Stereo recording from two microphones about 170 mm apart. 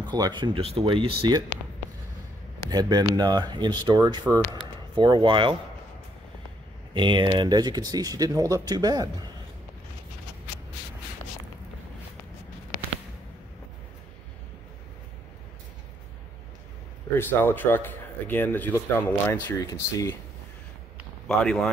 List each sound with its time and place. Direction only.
0.1 s speech: 25° right (ahead or behind)
2.7 s speech: 25° right (ahead or behind)
6.9 s speech: 30° right (ahead or behind)
17.1 s speech: 10° left (ahead or behind)
21.3 s speech: 5° left (ahead or behind)